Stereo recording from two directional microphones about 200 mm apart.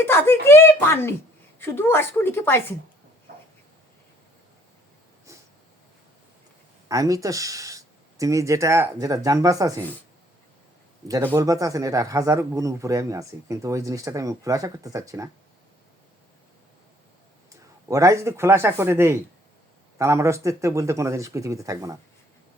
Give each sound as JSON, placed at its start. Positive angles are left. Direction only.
{"t": 0.0, "sound": "a woman's voice", "side_deg": 10}
{"t": 3.3, "sound": "a sound", "side_deg": -50}
{"t": 5.3, "sound": "snort", "side_deg": -15}
{"t": 6.8, "sound": "speech", "side_deg": -15}
{"t": 11.1, "sound": "speech", "side_deg": -10}
{"t": 17.8, "sound": "speech", "side_deg": -15}